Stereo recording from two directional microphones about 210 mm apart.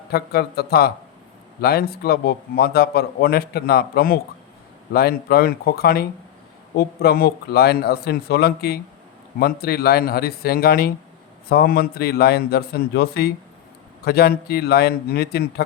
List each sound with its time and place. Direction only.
0.1 s speech: 50° left (ahead or behind)